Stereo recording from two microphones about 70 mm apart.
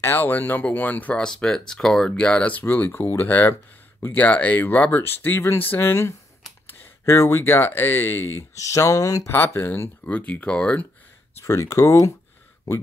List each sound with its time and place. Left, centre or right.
0.0 s speech: left
1.1 s speech: centre
2.6 s speech: left
8.5 s speech: left
10.0 s speech: left
11.3 s speech: left